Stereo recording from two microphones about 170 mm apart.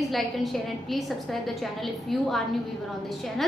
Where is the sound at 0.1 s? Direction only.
Centre (ahead or behind).